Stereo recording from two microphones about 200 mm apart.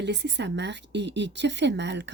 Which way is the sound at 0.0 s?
60° right (ahead or behind).